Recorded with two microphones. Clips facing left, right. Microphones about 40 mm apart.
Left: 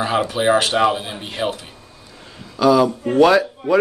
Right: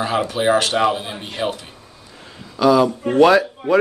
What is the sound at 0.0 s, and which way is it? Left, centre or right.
A man's voice, centre.